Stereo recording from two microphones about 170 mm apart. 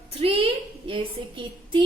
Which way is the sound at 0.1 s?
35° right (ahead or behind).